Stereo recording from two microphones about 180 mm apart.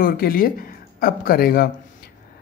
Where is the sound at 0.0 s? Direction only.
55° left (ahead or behind).